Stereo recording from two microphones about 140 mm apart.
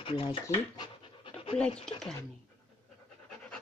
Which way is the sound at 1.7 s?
40° left (ahead or behind).